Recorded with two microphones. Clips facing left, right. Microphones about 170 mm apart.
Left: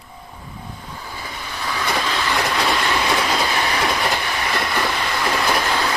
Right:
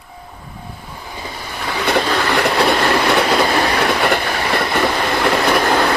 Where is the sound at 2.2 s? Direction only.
65° right (ahead or behind).